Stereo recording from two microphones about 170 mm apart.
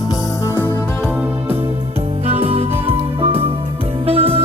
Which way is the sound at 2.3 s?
35° right (ahead or behind).